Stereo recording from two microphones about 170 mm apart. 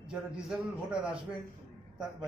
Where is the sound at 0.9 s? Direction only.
5° right (ahead or behind).